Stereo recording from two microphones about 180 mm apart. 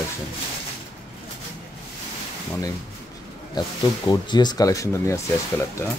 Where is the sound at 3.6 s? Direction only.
25° left (ahead or behind).